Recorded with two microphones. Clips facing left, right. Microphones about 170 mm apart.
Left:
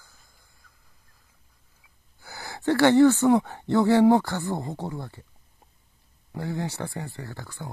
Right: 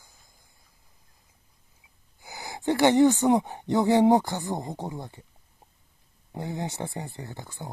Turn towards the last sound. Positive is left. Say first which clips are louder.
# left 1 dB
turn(degrees=-20)  # may be behind; listen again after turning